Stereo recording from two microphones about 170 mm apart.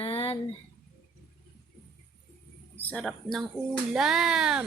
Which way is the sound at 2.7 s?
10° left (ahead or behind).